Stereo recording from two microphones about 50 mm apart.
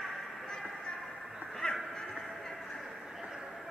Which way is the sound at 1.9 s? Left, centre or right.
Centre.